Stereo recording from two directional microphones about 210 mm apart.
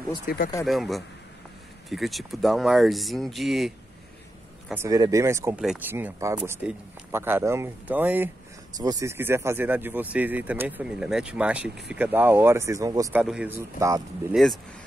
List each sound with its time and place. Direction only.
0.3 s speech: 45° left (ahead or behind)
0.7 s speech: centre (ahead or behind)
4.6 s speech: 15° right (ahead or behind)
13.2 s speech: 5° right (ahead or behind)
14.3 s speech: centre (ahead or behind)